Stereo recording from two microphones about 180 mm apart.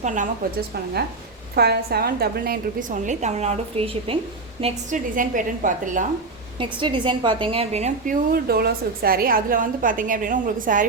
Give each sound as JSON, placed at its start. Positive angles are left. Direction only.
{"t": 0.0, "sound": "a woman's voice", "side_deg": -45}
{"t": 1.5, "sound": "a woman's voice", "side_deg": -60}
{"t": 4.6, "sound": "a woman's voice", "side_deg": -45}
{"t": 6.6, "sound": "a woman's voice", "side_deg": -25}